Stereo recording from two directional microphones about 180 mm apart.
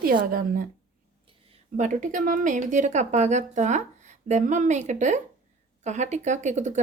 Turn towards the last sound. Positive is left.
turn(degrees=-40)  # may be behind; listen again after turning